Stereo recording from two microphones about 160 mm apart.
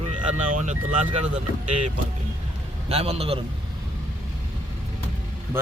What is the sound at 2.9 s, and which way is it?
Speech, 40° right (ahead or behind).